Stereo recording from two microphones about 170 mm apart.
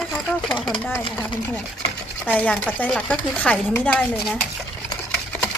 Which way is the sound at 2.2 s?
10° left (ahead or behind).